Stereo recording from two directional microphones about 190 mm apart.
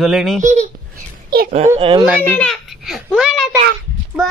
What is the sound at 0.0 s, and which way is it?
Speech, centre (ahead or behind).